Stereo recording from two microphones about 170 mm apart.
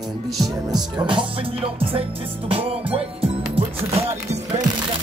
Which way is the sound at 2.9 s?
35° right (ahead or behind).